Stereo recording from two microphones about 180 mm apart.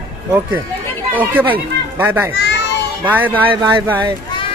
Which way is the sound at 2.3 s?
70° left (ahead or behind).